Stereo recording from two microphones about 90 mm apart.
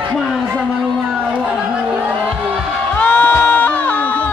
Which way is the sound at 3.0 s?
15° left (ahead or behind).